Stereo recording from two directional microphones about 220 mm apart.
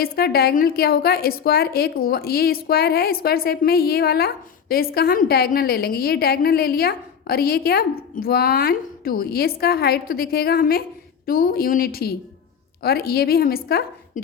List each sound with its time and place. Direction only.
0.0 s a woman's voice: 45° left (ahead or behind)